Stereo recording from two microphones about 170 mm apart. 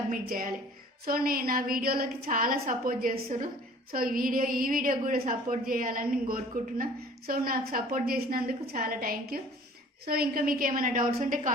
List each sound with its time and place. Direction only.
0.1 s a woman's voice: 55° right (ahead or behind)